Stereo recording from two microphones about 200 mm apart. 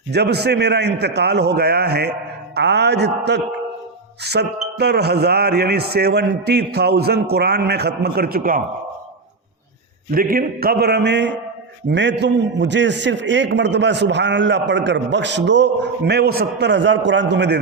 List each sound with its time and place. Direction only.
0.1 s a man's voice: 55° right (ahead or behind)
10.1 s a man's voice: 45° right (ahead or behind)